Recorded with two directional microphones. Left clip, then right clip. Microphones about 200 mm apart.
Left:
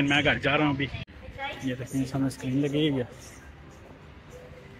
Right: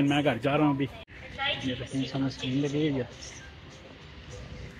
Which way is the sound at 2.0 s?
35° left (ahead or behind).